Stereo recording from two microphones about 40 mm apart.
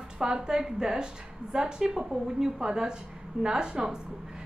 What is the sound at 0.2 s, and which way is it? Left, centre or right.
A woman's voice, centre.